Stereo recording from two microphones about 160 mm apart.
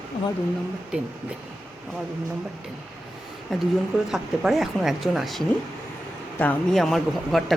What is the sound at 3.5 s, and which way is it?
Speech, centre (ahead or behind).